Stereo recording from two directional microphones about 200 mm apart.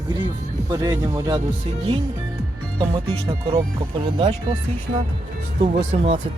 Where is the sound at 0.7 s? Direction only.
15° right (ahead or behind).